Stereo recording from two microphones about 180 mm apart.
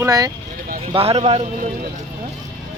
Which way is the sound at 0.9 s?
35° right (ahead or behind).